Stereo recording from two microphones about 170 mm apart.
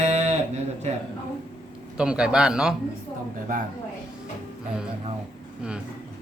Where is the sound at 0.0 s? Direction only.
40° right (ahead or behind).